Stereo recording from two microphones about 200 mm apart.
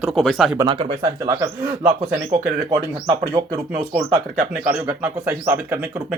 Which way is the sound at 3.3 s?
20° right (ahead or behind).